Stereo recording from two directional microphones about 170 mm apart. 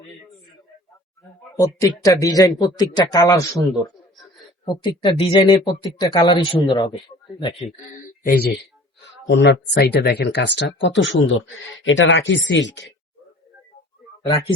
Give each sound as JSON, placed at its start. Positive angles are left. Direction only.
{"t": 1.5, "sound": "speech", "side_deg": 20}
{"t": 8.2, "sound": "speech", "side_deg": 60}
{"t": 9.2, "sound": "speech", "side_deg": 90}